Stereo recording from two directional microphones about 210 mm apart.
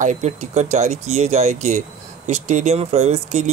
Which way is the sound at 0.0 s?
35° right (ahead or behind).